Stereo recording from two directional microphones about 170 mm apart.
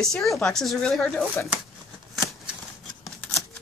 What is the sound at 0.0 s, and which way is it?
Speech, centre (ahead or behind).